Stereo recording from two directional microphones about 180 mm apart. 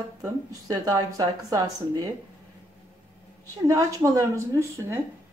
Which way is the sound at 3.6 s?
20° right (ahead or behind).